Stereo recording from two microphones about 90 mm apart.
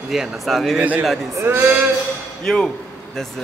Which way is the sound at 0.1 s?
Centre (ahead or behind).